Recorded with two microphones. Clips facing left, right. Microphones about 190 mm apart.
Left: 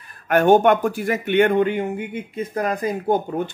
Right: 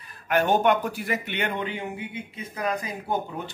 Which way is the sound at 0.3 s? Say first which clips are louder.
Left 7 dB; 50° left (ahead or behind).